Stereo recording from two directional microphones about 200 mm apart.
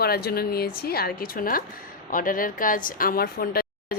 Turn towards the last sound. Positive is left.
turn(degrees=50)  # may be behind; listen again after turning